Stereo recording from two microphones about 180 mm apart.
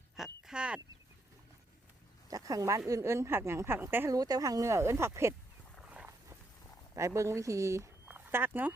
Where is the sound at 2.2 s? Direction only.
20° right (ahead or behind).